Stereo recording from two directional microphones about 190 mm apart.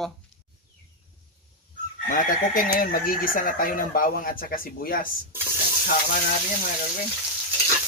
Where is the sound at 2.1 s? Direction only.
45° left (ahead or behind).